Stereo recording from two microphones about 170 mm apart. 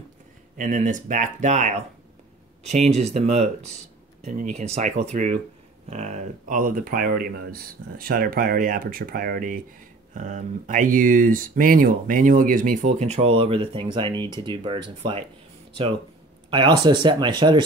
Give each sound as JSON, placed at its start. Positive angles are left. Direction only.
{"t": 0.6, "sound": "speech", "side_deg": -50}
{"t": 16.4, "sound": "speech", "side_deg": -30}